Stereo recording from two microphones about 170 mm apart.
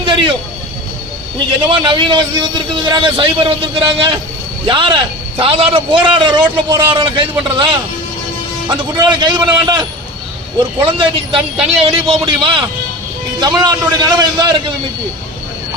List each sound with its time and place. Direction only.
0.0 s vehicle: 30° right (ahead or behind)
1.6 s a man's voice: 30° right (ahead or behind)
10.6 s a man's voice: 30° right (ahead or behind)